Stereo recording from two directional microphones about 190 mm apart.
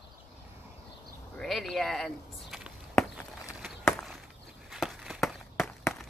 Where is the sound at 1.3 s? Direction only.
Centre (ahead or behind).